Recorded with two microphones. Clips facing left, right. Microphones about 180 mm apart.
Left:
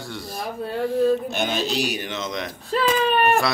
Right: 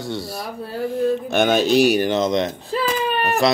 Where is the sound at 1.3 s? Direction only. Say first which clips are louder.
Right 8 dB; 60° right (ahead or behind).